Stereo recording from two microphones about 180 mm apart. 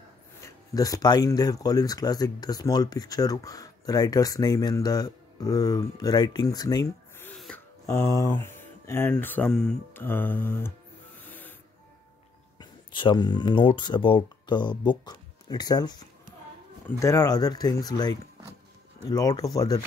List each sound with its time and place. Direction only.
0.4 s speech: 20° left (ahead or behind)
7.2 s snort: 5° left (ahead or behind)
7.8 s speech: 15° left (ahead or behind)
11.2 s printer: 10° left (ahead or behind)
12.5 s speech: 25° left (ahead or behind)